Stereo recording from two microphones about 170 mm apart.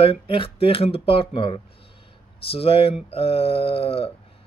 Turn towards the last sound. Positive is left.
turn(degrees=35)  # may be behind; listen again after turning